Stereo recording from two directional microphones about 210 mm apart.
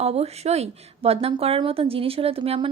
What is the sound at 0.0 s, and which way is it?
A woman's voice, 30° right (ahead or behind).